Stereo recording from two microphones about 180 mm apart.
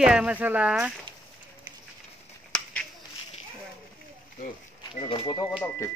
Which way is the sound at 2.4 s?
5° left (ahead or behind).